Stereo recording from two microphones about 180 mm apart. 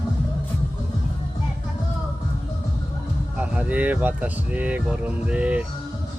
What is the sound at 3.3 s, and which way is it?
Speech, 5° right (ahead or behind).